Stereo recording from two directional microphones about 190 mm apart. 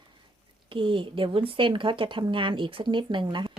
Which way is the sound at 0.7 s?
25° right (ahead or behind).